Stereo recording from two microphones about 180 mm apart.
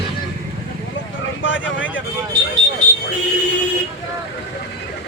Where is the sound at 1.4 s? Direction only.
90° left.